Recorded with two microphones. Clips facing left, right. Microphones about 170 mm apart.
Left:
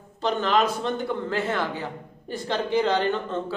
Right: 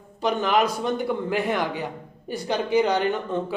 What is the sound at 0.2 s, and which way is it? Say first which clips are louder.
A man's voice: right 1 dB; 15° right (ahead or behind).